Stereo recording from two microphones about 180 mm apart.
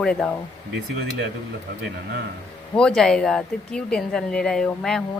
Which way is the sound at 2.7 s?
5° left (ahead or behind).